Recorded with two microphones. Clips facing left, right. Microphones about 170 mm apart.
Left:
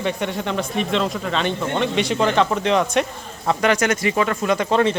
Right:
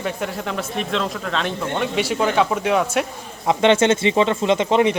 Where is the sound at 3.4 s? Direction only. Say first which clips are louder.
Right 3 dB; 25° right (ahead or behind).